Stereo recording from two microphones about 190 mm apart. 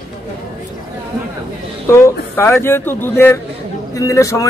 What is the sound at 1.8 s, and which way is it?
A man's voice, 15° left (ahead or behind).